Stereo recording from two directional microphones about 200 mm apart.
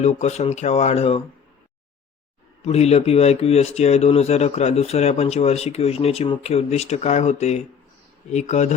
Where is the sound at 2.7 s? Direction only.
30° left (ahead or behind).